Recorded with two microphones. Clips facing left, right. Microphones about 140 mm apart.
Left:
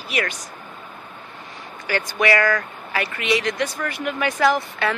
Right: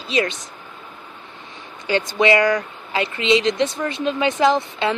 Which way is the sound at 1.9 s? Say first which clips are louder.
Right 3 dB; 20° right (ahead or behind).